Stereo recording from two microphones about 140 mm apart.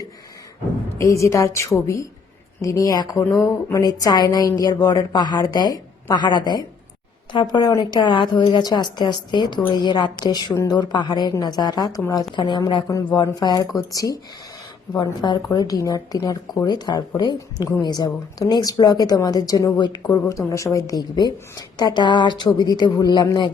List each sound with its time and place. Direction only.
0.9 s a woman's voice: 20° left (ahead or behind)